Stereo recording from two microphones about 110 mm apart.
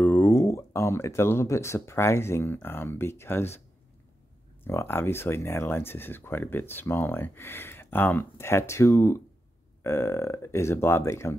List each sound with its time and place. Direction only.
0.0 s speech: 25° left (ahead or behind)
4.6 s speech: 20° left (ahead or behind)